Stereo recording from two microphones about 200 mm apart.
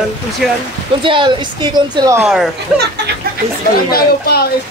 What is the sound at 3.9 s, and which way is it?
Speech, 50° left (ahead or behind).